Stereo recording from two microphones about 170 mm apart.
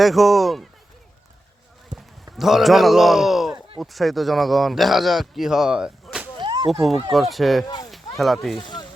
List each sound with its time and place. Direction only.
0.0 s speech: centre (ahead or behind)
2.0 s speech: centre (ahead or behind)
6.4 s a sound: 25° right (ahead or behind)
7.1 s speech: centre (ahead or behind)
7.9 s a sound: centre (ahead or behind)
8.5 s speech: 25° left (ahead or behind)